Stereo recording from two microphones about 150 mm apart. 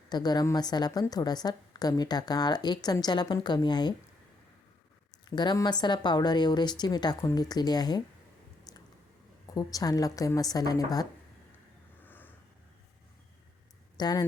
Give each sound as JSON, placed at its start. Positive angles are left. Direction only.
{"t": 0.1, "sound": "a woman's voice", "side_deg": 25}
{"t": 5.3, "sound": "a woman's voice", "side_deg": 30}
{"t": 9.6, "sound": "a woman's voice", "side_deg": 25}
{"t": 12.0, "sound": "a sound", "side_deg": 10}
{"t": 13.9, "sound": "speech", "side_deg": 25}